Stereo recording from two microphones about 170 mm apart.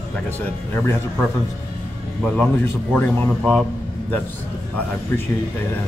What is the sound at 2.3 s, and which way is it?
A man's voice, 10° left (ahead or behind).